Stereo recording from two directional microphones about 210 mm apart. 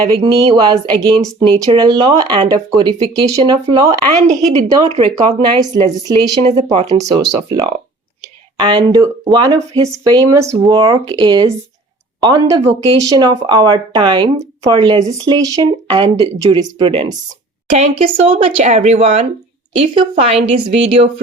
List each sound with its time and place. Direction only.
0.1 s speech: 25° right (ahead or behind)
4.5 s speech: 30° right (ahead or behind)
7.2 s speech: 15° right (ahead or behind)